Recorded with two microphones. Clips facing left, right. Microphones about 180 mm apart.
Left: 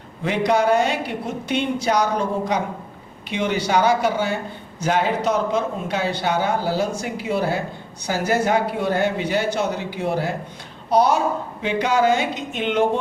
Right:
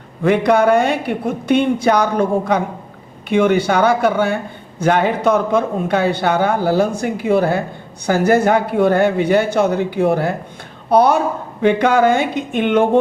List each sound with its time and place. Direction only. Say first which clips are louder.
0.2 s a woman's voice: right 6 dB; 55° right (ahead or behind)